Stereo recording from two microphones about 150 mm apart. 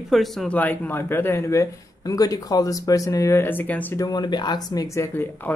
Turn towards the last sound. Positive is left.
turn(degrees=15)  # may be behind; listen again after turning